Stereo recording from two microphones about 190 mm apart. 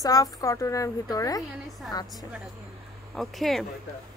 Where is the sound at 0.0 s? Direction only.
20° left (ahead or behind).